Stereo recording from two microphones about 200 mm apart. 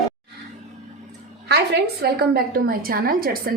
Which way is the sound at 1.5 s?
55° right (ahead or behind).